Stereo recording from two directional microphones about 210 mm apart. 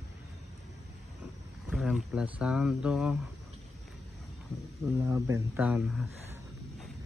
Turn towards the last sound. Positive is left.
turn(degrees=-5)  # may be behind; listen again after turning